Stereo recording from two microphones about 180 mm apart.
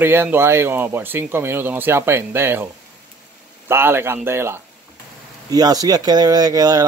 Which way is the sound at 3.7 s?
15° right (ahead or behind).